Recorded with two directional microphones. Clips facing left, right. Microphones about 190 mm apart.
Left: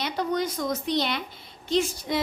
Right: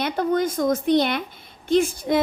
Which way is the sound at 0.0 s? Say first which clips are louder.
Right 5 dB; 50° right (ahead or behind).